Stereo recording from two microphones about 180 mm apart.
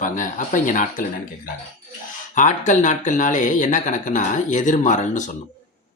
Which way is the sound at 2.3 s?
45° left (ahead or behind).